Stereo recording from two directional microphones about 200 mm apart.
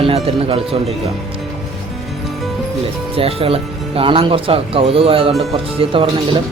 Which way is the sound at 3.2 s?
30° right (ahead or behind).